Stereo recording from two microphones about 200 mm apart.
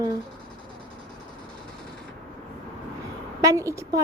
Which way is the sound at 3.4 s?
15° right (ahead or behind).